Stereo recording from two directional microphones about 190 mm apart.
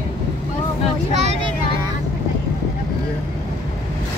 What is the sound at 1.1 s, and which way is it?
Speech, 35° right (ahead or behind).